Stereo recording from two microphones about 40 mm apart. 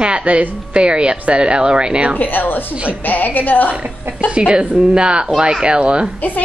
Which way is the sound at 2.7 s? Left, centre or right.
Right.